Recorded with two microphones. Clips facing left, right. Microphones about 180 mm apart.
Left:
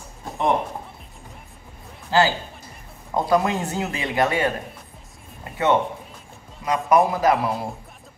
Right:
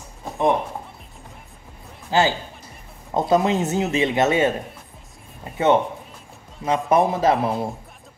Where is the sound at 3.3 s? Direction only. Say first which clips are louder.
Right 3 dB; 20° right (ahead or behind).